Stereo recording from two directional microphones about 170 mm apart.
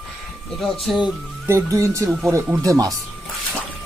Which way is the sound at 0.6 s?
5° right (ahead or behind).